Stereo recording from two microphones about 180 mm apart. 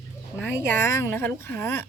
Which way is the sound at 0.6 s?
15° left (ahead or behind).